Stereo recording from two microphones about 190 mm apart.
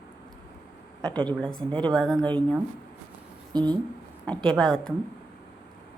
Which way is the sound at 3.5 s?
20° right (ahead or behind).